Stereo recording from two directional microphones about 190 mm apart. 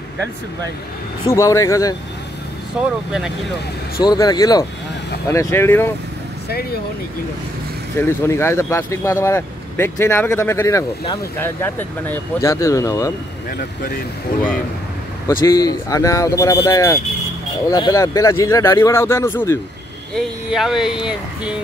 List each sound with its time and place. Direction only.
1.2 s speech: 15° left (ahead or behind)
2.8 s speech: 5° right (ahead or behind)
4.0 s speech: 20° left (ahead or behind)
8.0 s speech: 15° left (ahead or behind)
15.2 s speech: 20° left (ahead or behind)
20.2 s speech: centre (ahead or behind)